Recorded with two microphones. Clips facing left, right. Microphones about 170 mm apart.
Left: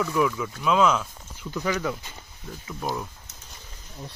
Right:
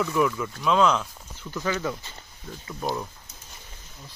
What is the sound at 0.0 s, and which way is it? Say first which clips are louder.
Speech: even; centre (ahead or behind).